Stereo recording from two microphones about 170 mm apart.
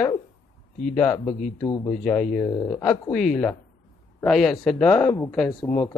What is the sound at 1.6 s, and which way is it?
Speech, 25° left (ahead or behind).